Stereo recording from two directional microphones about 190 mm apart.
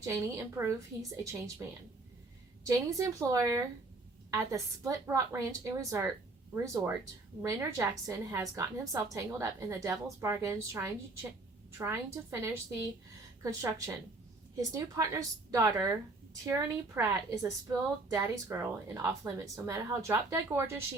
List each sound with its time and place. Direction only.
0.0 s a woman's voice: 15° right (ahead or behind)
2.6 s a woman's voice: 15° right (ahead or behind)
7.4 s a woman's voice: 15° right (ahead or behind)